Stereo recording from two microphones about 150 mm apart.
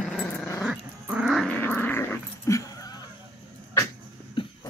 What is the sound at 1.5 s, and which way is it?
Dog, 10° left (ahead or behind).